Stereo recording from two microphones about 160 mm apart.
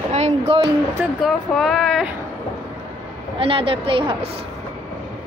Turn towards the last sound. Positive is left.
turn(degrees=-30)  # may be behind; listen again after turning